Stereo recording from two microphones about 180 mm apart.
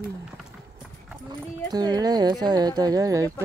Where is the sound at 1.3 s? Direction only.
20° right (ahead or behind).